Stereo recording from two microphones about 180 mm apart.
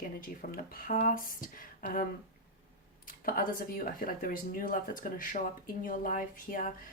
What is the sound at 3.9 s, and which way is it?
Speech, 50° left (ahead or behind).